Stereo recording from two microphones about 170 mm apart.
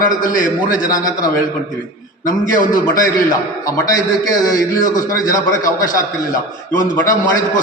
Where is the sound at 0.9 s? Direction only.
20° left (ahead or behind).